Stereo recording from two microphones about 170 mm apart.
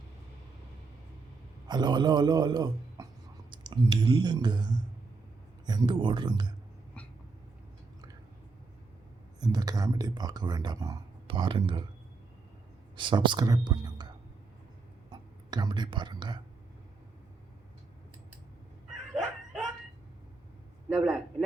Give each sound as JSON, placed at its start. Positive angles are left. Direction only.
{"t": 1.6, "sound": "speech", "side_deg": -25}
{"t": 9.4, "sound": "speech", "side_deg": -25}
{"t": 13.0, "sound": "speech", "side_deg": -30}
{"t": 15.1, "sound": "speech", "side_deg": -25}
{"t": 20.9, "sound": "a man's voice", "side_deg": 5}